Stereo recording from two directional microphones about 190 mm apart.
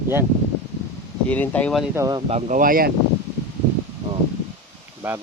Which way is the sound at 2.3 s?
40° right (ahead or behind).